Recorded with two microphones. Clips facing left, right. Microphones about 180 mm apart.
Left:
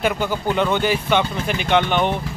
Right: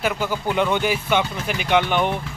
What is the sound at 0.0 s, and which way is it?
Speech, 5° right (ahead or behind).